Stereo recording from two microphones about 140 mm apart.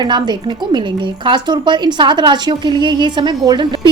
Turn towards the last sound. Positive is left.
turn(degrees=-35)  # may be behind; listen again after turning